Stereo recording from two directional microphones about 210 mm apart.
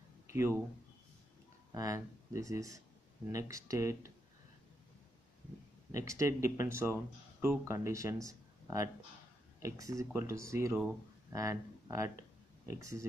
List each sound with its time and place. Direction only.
0.3 s speech: 10° right (ahead or behind)
1.7 s speech: 15° right (ahead or behind)
5.9 s speech: 15° right (ahead or behind)